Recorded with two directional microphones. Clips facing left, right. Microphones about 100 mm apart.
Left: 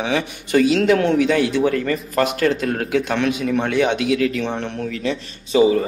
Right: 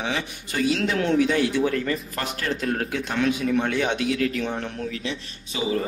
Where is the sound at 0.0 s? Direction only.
70° left (ahead or behind).